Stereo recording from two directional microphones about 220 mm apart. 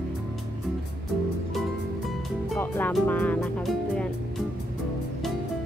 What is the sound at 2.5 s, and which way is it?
Speech, 10° left (ahead or behind).